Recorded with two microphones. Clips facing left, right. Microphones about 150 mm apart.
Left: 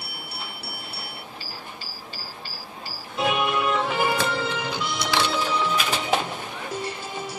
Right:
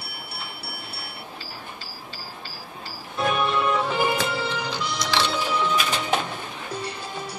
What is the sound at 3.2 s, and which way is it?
Music, 15° left (ahead or behind).